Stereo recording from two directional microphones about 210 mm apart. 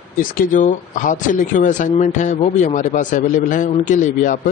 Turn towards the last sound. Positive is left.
turn(degrees=40)  # may be behind; listen again after turning